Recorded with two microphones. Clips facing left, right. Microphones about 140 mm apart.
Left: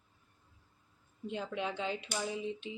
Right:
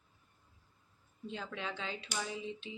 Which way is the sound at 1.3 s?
15° left (ahead or behind).